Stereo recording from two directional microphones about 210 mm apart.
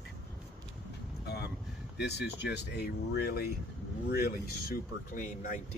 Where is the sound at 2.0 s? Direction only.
50° left (ahead or behind).